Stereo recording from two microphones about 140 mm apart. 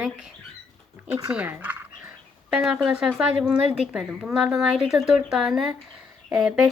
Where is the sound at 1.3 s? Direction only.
10° right (ahead or behind).